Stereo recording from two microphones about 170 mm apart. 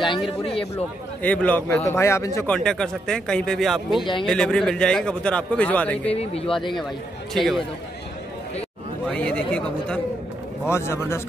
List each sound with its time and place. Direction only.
0.7 s a man's voice: 10° left (ahead or behind)
2.5 s a man's voice: 5° left (ahead or behind)
4.0 s speech: 30° left (ahead or behind)
4.3 s a man's voice: 5° left (ahead or behind)
6.1 s speech: 35° left (ahead or behind)
7.3 s a man's voice: centre (ahead or behind)
9.0 s a man's voice: 5° left (ahead or behind)